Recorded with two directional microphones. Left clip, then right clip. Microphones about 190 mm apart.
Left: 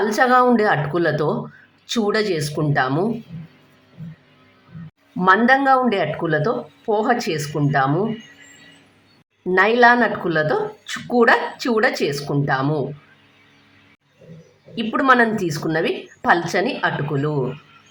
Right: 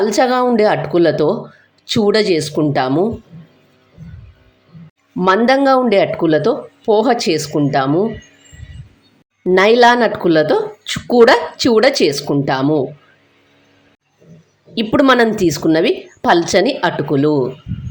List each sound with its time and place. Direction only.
0.0 s speech: 20° right (ahead or behind)
5.2 s speech: 20° right (ahead or behind)
9.6 s speech: 30° right (ahead or behind)
14.8 s speech: 30° right (ahead or behind)